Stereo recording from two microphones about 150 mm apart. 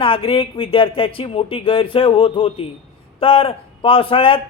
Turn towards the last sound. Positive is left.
turn(degrees=40)  # may be behind; listen again after turning